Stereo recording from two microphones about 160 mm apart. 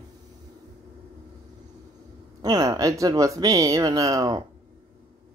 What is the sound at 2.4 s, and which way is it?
Speech, 25° right (ahead or behind).